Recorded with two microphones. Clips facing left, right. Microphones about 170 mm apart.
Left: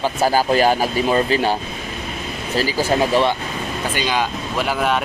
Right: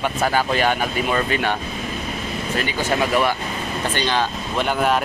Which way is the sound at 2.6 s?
30° left (ahead or behind).